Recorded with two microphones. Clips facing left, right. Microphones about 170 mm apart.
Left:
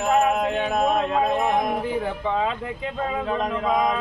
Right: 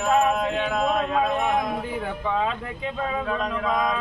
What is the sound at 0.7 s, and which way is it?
Speech, 20° left (ahead or behind).